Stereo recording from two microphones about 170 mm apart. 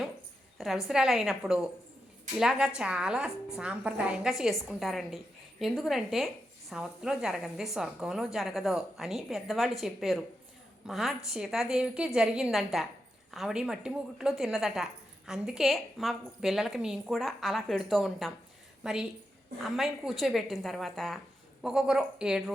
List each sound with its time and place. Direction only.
0.6 s a woman's voice: centre (ahead or behind)